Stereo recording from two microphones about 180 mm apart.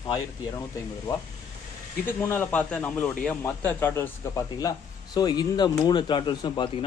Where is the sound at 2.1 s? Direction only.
15° left (ahead or behind).